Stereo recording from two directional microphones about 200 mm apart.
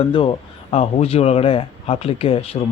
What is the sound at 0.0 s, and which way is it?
Speech, 25° left (ahead or behind).